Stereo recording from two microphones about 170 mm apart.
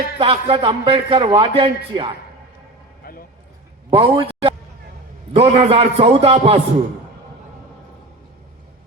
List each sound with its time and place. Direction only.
0.2 s a man's voice: 35° right (ahead or behind)
3.0 s a sound: 60° left (ahead or behind)
3.8 s a man's voice: 30° right (ahead or behind)